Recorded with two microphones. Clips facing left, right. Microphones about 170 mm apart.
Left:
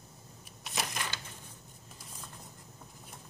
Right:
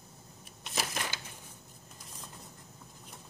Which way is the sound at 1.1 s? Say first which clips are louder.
Even; 10° right (ahead or behind).